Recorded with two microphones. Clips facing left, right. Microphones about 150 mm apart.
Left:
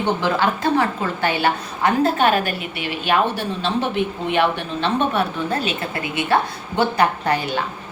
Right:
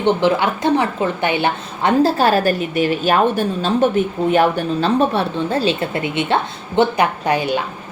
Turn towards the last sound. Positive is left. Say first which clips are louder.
# right 3 dB
turn(degrees=-15)  # may be behind; listen again after turning